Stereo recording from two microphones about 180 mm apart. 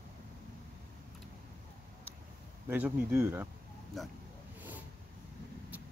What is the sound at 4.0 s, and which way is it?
Speech, centre (ahead or behind).